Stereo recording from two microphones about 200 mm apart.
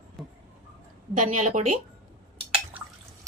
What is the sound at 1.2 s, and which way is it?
Speech, 40° right (ahead or behind).